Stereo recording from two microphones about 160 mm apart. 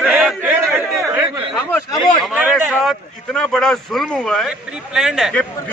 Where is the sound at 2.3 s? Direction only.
10° right (ahead or behind).